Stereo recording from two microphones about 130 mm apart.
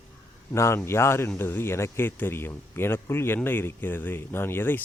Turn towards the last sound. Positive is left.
turn(degrees=15)  # may be behind; listen again after turning